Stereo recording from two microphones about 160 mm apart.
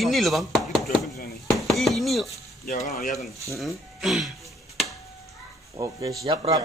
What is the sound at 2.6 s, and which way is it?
Speech, 55° left (ahead or behind).